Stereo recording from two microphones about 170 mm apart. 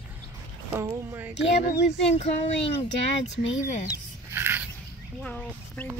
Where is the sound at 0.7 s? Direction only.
15° right (ahead or behind).